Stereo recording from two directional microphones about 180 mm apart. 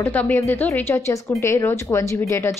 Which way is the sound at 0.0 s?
10° left (ahead or behind).